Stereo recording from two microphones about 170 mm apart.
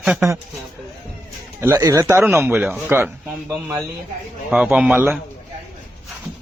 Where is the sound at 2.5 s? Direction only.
10° right (ahead or behind).